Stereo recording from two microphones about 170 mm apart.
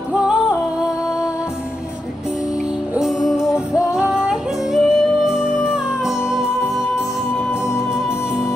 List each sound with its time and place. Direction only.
0.1 s music: 5° right (ahead or behind)
2.9 s music: 5° right (ahead or behind)
7.3 s music: 15° left (ahead or behind)